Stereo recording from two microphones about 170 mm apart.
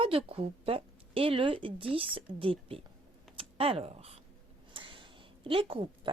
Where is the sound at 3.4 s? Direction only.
35° right (ahead or behind).